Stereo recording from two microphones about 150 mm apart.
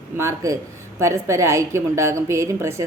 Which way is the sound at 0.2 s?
20° right (ahead or behind).